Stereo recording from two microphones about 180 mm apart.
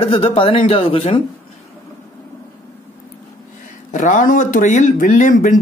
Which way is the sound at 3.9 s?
45° left (ahead or behind).